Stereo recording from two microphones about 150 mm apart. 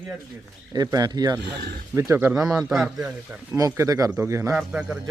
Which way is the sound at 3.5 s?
20° right (ahead or behind).